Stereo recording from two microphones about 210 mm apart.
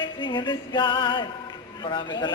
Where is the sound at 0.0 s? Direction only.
20° left (ahead or behind).